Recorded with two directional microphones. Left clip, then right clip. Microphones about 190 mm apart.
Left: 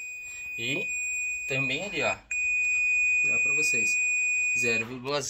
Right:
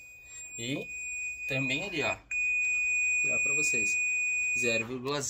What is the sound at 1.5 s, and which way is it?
Speech, 25° left (ahead or behind).